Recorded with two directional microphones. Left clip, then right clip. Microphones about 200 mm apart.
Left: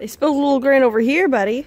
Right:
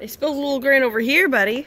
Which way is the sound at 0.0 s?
40° left (ahead or behind).